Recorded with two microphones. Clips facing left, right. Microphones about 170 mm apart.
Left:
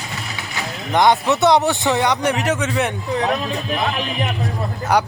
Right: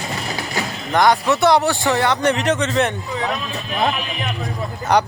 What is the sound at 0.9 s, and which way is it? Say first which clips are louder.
A man's voice: even; 20° left (ahead or behind).